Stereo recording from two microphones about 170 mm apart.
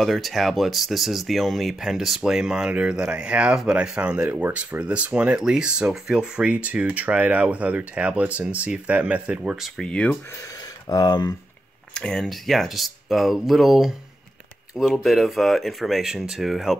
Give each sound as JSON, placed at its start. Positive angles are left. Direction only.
{"t": 0.0, "sound": "speech", "side_deg": 0}
{"t": 10.9, "sound": "speech", "side_deg": 25}
{"t": 11.9, "sound": "speech", "side_deg": 5}